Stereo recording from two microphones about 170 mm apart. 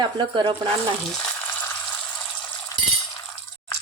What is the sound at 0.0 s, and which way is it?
Speech, 25° right (ahead or behind).